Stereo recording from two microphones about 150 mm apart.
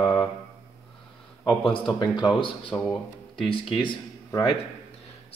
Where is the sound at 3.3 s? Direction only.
35° left (ahead or behind).